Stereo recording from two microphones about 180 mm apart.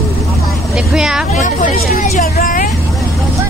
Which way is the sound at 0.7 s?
5° right (ahead or behind).